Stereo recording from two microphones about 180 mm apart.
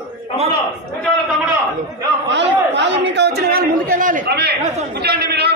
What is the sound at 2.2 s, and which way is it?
Chatter, 75° right (ahead or behind).